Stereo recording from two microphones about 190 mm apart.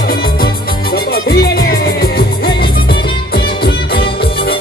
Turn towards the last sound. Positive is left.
turn(degrees=55)  # may be behind; listen again after turning